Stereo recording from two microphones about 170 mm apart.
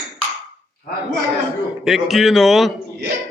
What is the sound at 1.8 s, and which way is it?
Speech, centre (ahead or behind).